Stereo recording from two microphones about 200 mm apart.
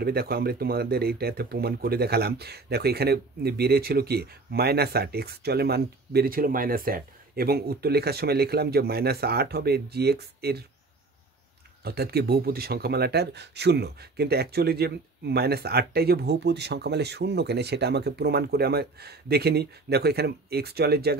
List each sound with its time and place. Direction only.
0.0 s speech: 50° right (ahead or behind)
11.8 s speech: 50° right (ahead or behind)